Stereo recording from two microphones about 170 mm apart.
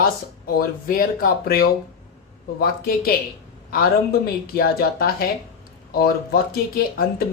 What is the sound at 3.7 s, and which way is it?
Speech, 60° left (ahead or behind).